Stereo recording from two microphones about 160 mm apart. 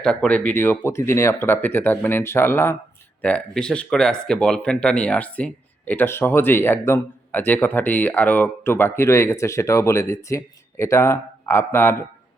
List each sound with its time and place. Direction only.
0.0 s speech: 5° left (ahead or behind)